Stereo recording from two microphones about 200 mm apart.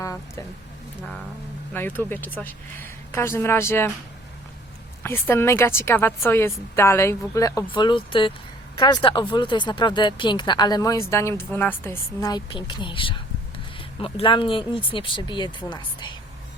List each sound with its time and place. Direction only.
0.0 s a sound: 15° left (ahead or behind)
1.7 s a woman's voice: 10° left (ahead or behind)
5.0 s a woman's voice: 10° left (ahead or behind)